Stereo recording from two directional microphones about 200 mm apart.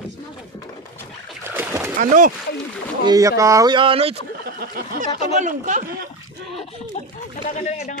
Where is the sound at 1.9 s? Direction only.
40° right (ahead or behind).